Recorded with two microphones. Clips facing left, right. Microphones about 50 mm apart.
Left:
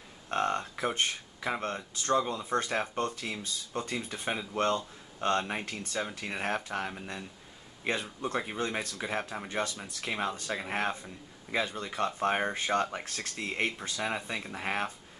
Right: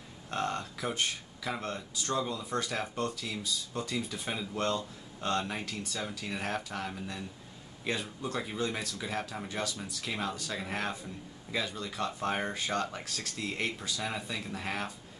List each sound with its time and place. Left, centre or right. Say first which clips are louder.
0.3 s speech: left 4 dB; left